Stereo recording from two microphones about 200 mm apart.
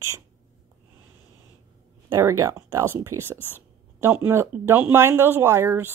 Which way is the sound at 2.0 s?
15° right (ahead or behind).